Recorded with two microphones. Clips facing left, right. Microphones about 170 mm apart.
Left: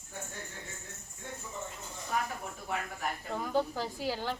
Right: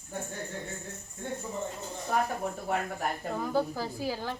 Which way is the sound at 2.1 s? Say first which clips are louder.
Right 6 dB; 40° right (ahead or behind).